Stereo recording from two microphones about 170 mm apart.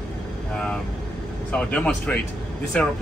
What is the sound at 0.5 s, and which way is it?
Speech, 5° left (ahead or behind).